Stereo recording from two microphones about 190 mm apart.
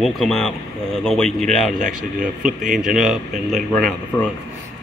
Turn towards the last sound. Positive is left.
turn(degrees=5)  # may be behind; listen again after turning